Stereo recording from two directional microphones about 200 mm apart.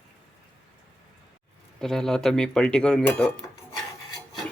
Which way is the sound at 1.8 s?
Centre (ahead or behind).